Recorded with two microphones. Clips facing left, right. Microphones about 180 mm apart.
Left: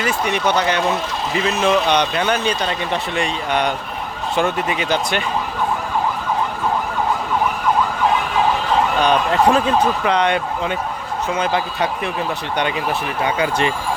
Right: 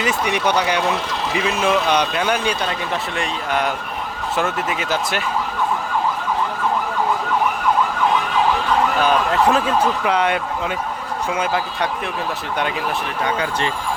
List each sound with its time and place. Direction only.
0.0 s speech: 15° right (ahead or behind)
9.0 s speech: 5° right (ahead or behind)
13.2 s speech: 10° left (ahead or behind)